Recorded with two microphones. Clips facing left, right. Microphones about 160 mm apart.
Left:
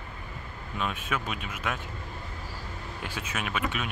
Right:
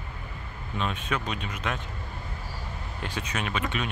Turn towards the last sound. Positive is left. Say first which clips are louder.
# right 1 dB
turn(degrees=5)  # may be behind; listen again after turning